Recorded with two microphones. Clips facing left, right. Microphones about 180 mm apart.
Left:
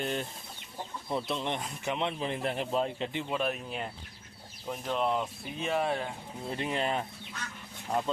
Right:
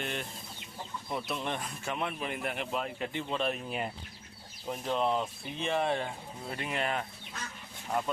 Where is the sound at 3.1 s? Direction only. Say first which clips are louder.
Left 1 dB; 15° left (ahead or behind).